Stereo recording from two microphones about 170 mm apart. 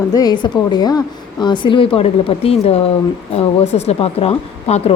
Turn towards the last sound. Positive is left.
turn(degrees=35)  # may be behind; listen again after turning